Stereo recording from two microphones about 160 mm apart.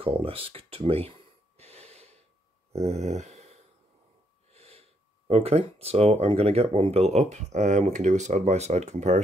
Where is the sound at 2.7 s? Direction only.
45° right (ahead or behind).